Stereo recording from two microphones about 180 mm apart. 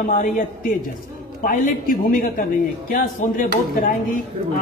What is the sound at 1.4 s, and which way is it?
A man's voice, 50° left (ahead or behind).